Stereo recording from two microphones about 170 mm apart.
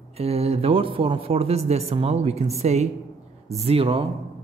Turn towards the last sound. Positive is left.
turn(degrees=-35)  # may be behind; listen again after turning